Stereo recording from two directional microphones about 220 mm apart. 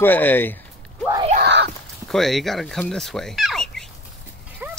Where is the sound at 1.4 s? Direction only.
50° right (ahead or behind).